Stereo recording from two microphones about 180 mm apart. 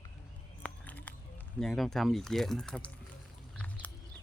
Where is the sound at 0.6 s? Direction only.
10° left (ahead or behind).